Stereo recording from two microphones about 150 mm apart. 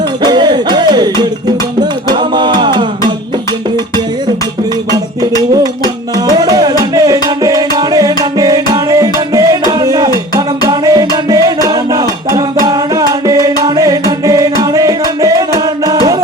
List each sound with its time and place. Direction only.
0.2 s music: 30° right (ahead or behind)
5.4 s music: 25° right (ahead or behind)